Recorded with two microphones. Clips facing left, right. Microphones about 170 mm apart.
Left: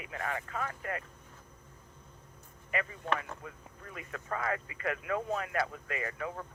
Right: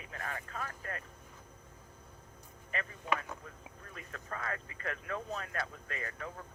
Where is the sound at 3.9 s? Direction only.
90° left.